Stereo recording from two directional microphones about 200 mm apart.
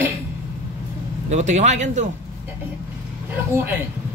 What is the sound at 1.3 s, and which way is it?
Speech, 35° right (ahead or behind).